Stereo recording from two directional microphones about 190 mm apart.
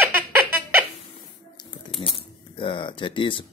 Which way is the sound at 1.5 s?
25° left (ahead or behind).